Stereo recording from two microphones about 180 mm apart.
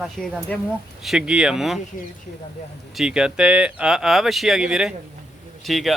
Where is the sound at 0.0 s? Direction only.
Centre (ahead or behind).